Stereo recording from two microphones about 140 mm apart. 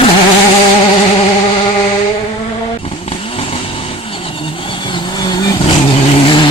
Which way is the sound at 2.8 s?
45° left (ahead or behind).